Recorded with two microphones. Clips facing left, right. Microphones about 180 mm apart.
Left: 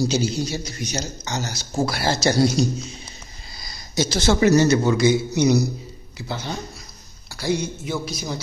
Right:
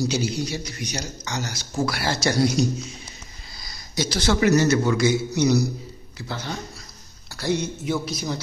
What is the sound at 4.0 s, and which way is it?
Speech, 25° left (ahead or behind).